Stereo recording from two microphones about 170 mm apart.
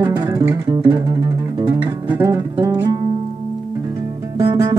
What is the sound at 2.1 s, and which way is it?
Music, 15° right (ahead or behind).